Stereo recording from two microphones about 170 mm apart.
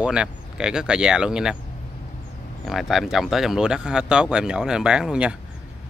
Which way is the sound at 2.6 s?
Centre (ahead or behind).